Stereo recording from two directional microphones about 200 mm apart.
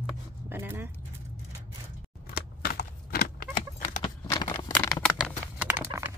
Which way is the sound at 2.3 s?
50° left (ahead or behind).